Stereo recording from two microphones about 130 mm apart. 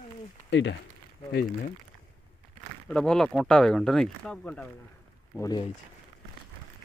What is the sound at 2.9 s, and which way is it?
Speech, 5° left (ahead or behind).